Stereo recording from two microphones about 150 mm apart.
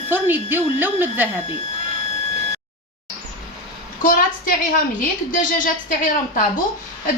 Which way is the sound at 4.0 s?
65° left (ahead or behind).